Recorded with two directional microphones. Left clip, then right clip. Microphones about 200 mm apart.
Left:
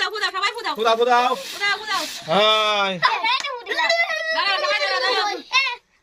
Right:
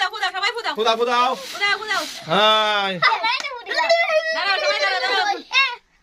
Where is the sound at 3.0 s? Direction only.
10° right (ahead or behind).